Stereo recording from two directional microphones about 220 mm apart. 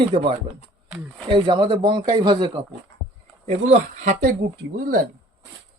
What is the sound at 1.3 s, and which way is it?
Speech, 20° right (ahead or behind).